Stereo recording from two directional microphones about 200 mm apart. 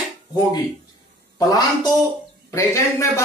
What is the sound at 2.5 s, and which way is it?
Speech, 15° left (ahead or behind).